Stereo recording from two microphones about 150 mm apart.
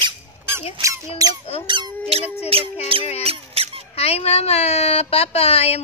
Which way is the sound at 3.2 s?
40° right (ahead or behind).